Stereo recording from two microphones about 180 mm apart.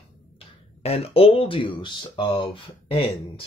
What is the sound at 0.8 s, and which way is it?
Speech, 35° left (ahead or behind).